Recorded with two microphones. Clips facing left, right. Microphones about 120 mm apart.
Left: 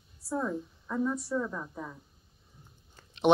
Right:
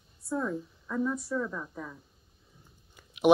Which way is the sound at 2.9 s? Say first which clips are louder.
Right 2 dB; 10° right (ahead or behind).